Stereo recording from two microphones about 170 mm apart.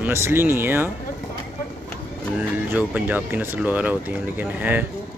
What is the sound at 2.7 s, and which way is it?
Speech, 10° right (ahead or behind).